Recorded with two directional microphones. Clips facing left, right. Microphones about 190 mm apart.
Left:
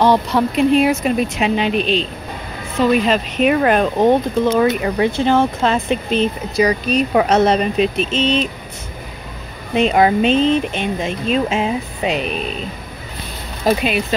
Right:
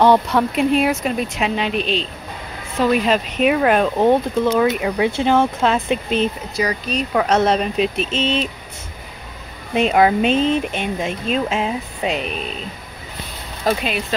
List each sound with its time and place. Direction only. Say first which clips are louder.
0.0 s speech: even; 15° left (ahead or behind)
0.6 s speech: left 5 dB; centre (ahead or behind)
6.6 s speech: left 6 dB; 15° left (ahead or behind)
7.3 s speech: left 1 dB; centre (ahead or behind)
9.8 s speech: left 1 dB; 5° right (ahead or behind)
13.7 s speech: left 4 dB; 5° left (ahead or behind)